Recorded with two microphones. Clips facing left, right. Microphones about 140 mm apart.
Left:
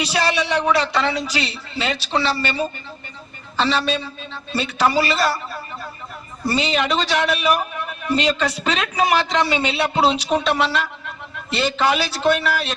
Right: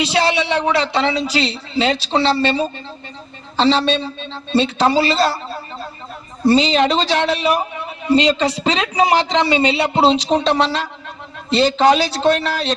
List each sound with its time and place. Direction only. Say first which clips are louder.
0.0 s a man's voice: right 4 dB; 25° right (ahead or behind)
3.6 s a man's voice: right 5 dB; 30° right (ahead or behind)